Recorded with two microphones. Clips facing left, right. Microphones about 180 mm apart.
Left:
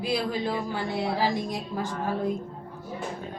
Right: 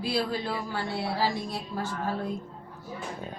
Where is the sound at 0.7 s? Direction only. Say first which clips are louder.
Left 3 dB; 15° left (ahead or behind).